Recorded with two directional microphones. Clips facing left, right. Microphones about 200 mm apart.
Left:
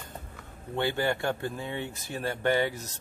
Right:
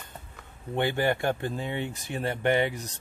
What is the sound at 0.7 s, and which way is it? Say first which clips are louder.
Speech: right 2 dB; 15° right (ahead or behind).